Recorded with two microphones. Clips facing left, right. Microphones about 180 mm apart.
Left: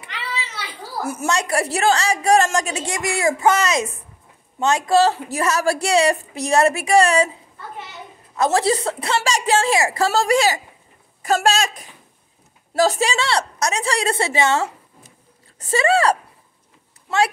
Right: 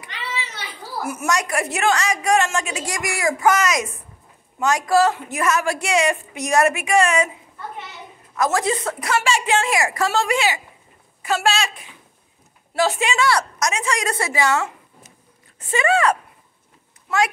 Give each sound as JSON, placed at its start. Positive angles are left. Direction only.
{"t": 1.0, "sound": "a woman's voice", "side_deg": 30}
{"t": 2.8, "sound": "a woman's voice", "side_deg": 25}
{"t": 8.4, "sound": "a woman's voice", "side_deg": 30}